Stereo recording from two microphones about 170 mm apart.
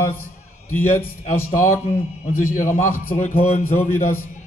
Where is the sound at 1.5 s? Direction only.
50° left (ahead or behind).